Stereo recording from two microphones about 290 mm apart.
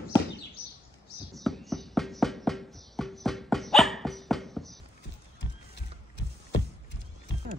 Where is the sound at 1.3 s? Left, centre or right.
Centre.